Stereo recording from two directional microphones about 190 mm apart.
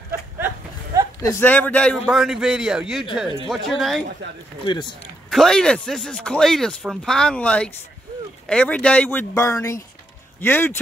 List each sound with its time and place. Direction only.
1.2 s speech: 10° left (ahead or behind)
4.6 s speech: 25° left (ahead or behind)
5.3 s speech: centre (ahead or behind)